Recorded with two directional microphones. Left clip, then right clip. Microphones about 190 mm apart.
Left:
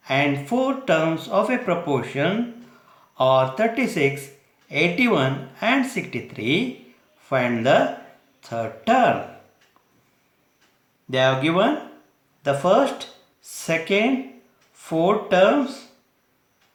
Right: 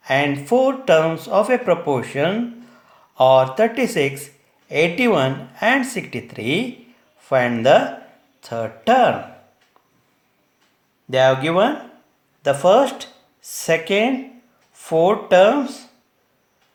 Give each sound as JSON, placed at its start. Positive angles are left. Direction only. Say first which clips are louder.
{"t": 0.0, "sound": "speech", "louder": "right 3 dB", "side_deg": -50}
{"t": 11.1, "sound": "speech", "louder": "right 4 dB", "side_deg": -50}